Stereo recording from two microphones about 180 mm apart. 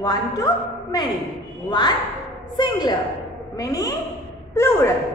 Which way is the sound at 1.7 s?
25° left (ahead or behind).